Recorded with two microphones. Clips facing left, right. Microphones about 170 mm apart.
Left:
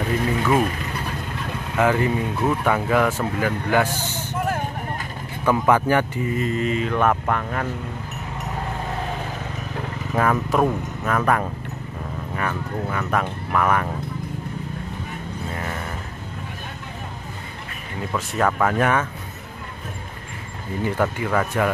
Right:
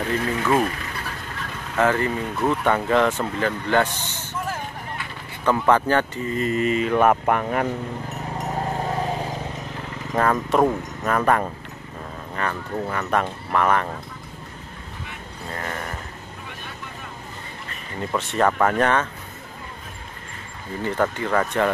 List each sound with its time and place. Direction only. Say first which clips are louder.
0.1 s speech: left 1 dB; 10° left (ahead or behind)
1.8 s speech: left 1 dB; 15° left (ahead or behind)
4.4 s a sound: left 4 dB; 55° left (ahead or behind)
5.4 s speech: even; 10° left (ahead or behind)
6.4 s mantra: right 4 dB; centre (ahead or behind)
8.7 s vehicle: right 3 dB; 30° right (ahead or behind)
10.1 s speech: right 1 dB; 5° left (ahead or behind)
18.1 s speech: right 1 dB; centre (ahead or behind)
20.8 s speech: even; 10° left (ahead or behind)